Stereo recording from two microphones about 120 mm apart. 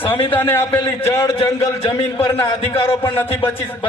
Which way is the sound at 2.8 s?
20° left (ahead or behind).